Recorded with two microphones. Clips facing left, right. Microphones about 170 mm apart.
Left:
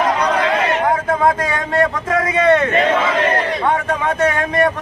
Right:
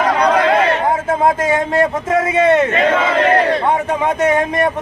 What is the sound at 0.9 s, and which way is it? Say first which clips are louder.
A man's voice: right 1 dB; 25° right (ahead or behind).